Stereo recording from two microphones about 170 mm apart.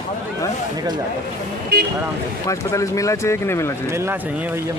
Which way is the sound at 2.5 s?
20° left (ahead or behind).